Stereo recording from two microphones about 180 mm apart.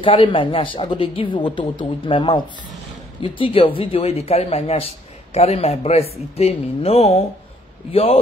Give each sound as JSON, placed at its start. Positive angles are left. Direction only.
{"t": 0.0, "sound": "a man's voice", "side_deg": 30}